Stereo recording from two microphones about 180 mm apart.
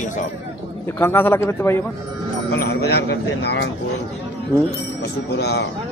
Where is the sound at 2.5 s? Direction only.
65° left (ahead or behind).